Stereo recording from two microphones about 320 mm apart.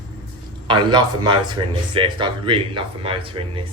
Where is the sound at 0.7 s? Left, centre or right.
Centre.